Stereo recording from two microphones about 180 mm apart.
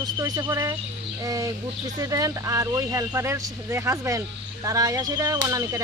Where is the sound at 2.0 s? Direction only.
20° right (ahead or behind).